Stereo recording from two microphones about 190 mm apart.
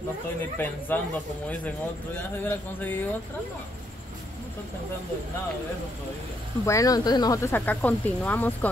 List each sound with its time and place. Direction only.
0.4 s speech: 10° left (ahead or behind)
6.6 s speech: 15° left (ahead or behind)